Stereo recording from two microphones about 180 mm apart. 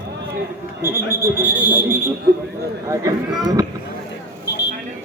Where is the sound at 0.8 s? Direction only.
15° right (ahead or behind).